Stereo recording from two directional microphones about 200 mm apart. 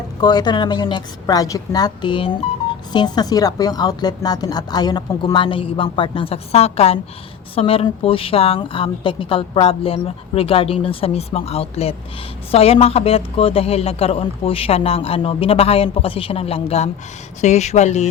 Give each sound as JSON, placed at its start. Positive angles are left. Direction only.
{"t": 0.2, "sound": "speech", "side_deg": 20}